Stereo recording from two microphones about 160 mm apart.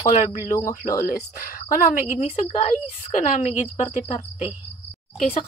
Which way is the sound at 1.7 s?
55° left (ahead or behind).